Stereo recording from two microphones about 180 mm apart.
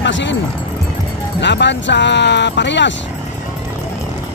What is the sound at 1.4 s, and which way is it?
Speech, 75° left (ahead or behind).